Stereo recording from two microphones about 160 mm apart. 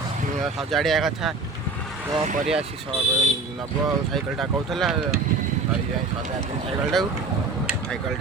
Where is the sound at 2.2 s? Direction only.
55° right (ahead or behind).